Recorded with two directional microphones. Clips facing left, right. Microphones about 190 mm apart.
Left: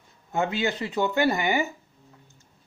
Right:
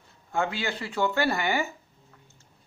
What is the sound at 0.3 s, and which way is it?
Speech, 20° left (ahead or behind).